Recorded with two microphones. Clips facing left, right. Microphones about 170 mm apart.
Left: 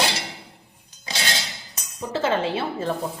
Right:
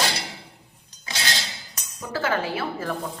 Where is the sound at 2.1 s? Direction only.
25° left (ahead or behind).